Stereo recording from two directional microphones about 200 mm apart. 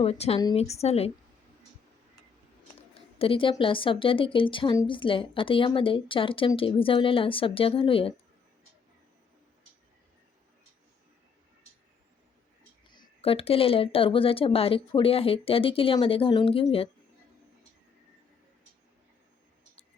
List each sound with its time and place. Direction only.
0.0 s a woman's voice: 30° left (ahead or behind)
3.2 s a woman's voice: 25° left (ahead or behind)
12.9 s a woman's voice: 25° left (ahead or behind)